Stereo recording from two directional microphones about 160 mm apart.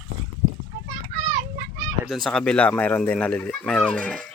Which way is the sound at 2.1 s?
Centre (ahead or behind).